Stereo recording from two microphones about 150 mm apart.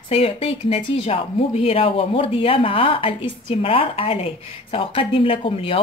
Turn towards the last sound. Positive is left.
turn(degrees=40)  # may be behind; listen again after turning